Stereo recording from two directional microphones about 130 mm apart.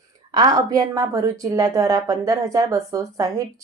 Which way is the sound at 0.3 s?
30° right (ahead or behind).